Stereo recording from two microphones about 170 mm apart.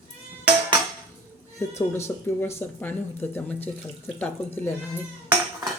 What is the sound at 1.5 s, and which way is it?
Speech, 15° left (ahead or behind).